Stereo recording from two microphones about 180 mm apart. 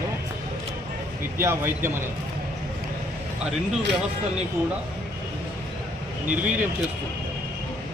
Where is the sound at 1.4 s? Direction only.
15° right (ahead or behind).